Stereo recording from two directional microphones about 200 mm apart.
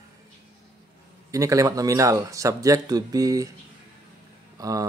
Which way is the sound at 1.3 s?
15° right (ahead or behind).